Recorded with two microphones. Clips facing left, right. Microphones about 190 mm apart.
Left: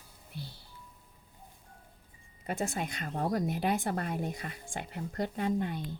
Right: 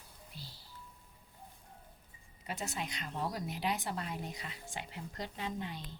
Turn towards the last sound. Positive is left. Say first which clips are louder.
# left 9 dB
turn(degrees=50)  # may be behind; listen again after turning